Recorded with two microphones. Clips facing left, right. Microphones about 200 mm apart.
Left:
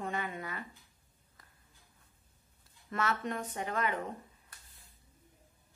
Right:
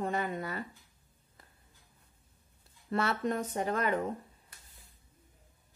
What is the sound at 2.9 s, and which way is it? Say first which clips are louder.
Speech: right 4 dB; 30° right (ahead or behind).